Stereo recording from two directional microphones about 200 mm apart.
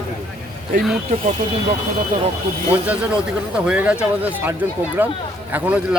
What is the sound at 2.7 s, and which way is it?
Speech, 5° right (ahead or behind).